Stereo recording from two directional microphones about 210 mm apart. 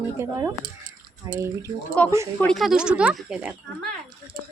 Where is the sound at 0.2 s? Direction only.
15° right (ahead or behind).